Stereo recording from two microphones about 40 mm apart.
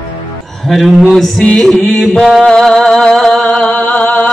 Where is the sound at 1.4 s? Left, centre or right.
Left.